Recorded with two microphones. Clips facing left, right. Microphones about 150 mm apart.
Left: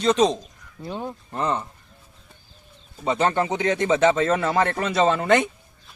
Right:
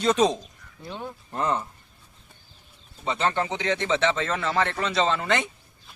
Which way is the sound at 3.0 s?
45° left (ahead or behind).